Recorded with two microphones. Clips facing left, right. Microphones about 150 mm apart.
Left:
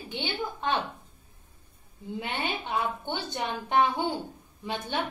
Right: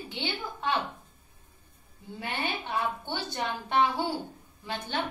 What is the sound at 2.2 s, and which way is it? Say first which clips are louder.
A woman's voice: even; 20° left (ahead or behind).